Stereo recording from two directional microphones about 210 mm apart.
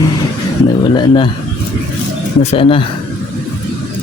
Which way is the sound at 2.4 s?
30° left (ahead or behind).